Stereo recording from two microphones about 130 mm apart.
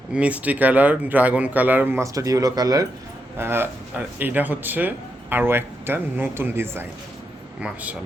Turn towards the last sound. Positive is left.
turn(degrees=-10)  # may be behind; listen again after turning